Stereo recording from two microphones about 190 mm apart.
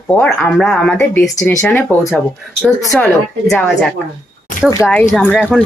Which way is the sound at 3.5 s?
Centre (ahead or behind).